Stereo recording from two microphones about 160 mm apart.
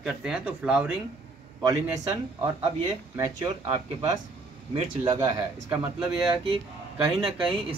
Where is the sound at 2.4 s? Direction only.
25° right (ahead or behind).